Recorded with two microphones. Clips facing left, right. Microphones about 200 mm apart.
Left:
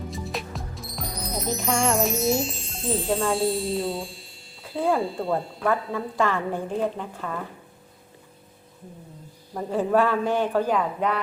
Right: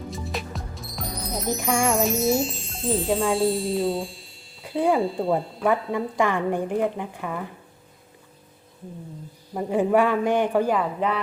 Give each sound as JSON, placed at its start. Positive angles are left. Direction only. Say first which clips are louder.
{"t": 0.1, "sound": "music", "louder": "even", "side_deg": 0}
{"t": 4.7, "sound": "speech", "louder": "right 2 dB", "side_deg": -15}
{"t": 4.9, "sound": "speech", "louder": "right 3 dB", "side_deg": 0}
{"t": 5.6, "sound": "a woman's voice", "louder": "right 3 dB", "side_deg": -15}
{"t": 9.6, "sound": "a woman's voice", "louder": "right 2 dB", "side_deg": -15}